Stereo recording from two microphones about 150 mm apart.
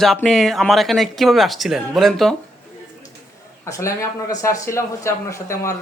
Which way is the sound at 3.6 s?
20° left (ahead or behind).